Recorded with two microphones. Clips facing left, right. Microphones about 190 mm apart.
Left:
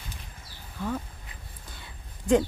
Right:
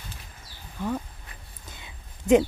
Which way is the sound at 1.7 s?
20° right (ahead or behind).